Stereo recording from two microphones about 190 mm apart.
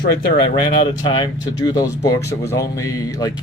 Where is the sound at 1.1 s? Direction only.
20° left (ahead or behind).